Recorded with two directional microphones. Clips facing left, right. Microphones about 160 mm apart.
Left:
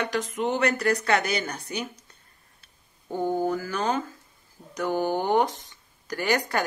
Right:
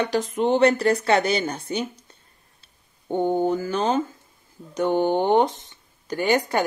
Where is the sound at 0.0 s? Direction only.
30° right (ahead or behind).